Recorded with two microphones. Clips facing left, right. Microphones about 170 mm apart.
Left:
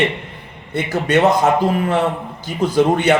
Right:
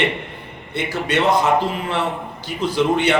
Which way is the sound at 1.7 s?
50° left (ahead or behind).